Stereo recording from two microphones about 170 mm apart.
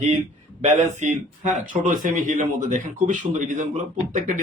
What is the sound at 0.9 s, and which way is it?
A man's voice, 45° right (ahead or behind).